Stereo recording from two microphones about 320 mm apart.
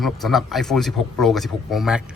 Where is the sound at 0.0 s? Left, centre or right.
Centre.